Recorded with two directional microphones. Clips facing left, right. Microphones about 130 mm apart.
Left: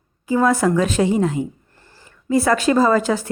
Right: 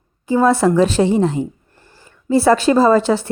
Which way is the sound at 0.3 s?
25° right (ahead or behind).